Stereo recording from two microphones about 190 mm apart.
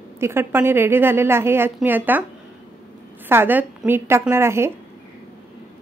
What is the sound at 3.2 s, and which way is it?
Speech, 10° right (ahead or behind).